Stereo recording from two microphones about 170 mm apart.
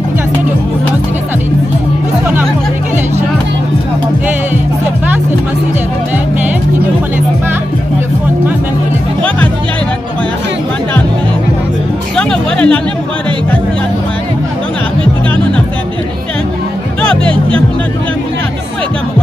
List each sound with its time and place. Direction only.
12.2 s music: 5° left (ahead or behind)
17.2 s music: 30° right (ahead or behind)